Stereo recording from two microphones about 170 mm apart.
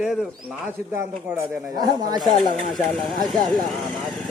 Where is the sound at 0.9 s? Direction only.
15° right (ahead or behind).